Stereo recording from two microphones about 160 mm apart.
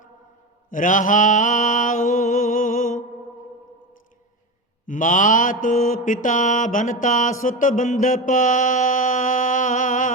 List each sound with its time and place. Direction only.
0.7 s mantra: 55° left (ahead or behind)
4.9 s mantra: 55° left (ahead or behind)